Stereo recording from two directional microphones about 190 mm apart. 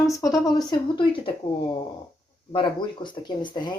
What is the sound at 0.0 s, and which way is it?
Speech, 15° left (ahead or behind).